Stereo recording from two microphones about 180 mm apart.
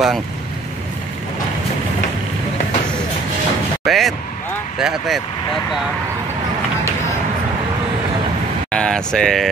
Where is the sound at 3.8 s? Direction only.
Centre (ahead or behind).